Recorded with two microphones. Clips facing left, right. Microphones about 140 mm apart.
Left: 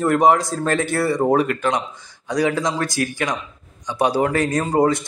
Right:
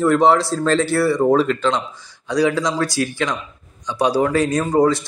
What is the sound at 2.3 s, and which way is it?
Speech, 50° left (ahead or behind).